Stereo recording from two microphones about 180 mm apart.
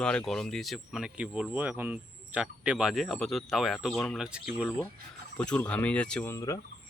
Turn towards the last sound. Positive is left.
turn(degrees=15)  # may be behind; listen again after turning